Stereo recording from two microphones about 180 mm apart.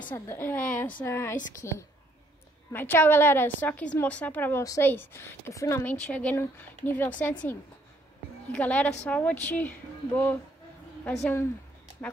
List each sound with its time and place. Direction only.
0.1 s a woman's voice: 10° left (ahead or behind)
12.0 s a woman's voice: 5° left (ahead or behind)